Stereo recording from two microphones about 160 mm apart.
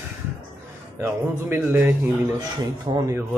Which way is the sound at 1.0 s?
10° right (ahead or behind).